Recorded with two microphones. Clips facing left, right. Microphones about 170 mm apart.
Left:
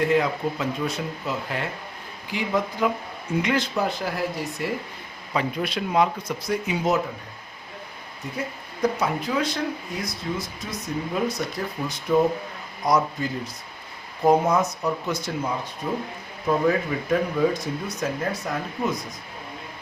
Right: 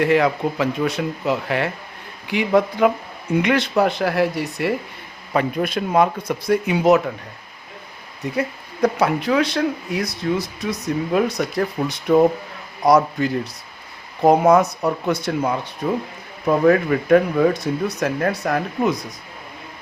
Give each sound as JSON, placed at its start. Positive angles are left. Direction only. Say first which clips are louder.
{"t": 0.0, "sound": "speech", "louder": "right 5 dB", "side_deg": -75}
{"t": 5.3, "sound": "speech", "louder": "right 5 dB", "side_deg": -55}
{"t": 8.4, "sound": "speech", "louder": "right 5 dB", "side_deg": -70}